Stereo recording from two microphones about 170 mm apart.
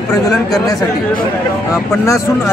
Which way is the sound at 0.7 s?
20° left (ahead or behind).